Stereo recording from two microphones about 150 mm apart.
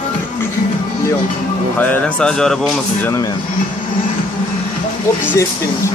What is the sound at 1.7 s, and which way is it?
Speech, 10° left (ahead or behind).